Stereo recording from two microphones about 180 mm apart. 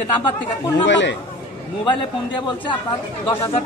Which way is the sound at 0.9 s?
85° left.